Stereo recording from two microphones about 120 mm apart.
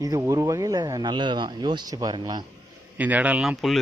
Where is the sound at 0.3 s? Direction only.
30° right (ahead or behind).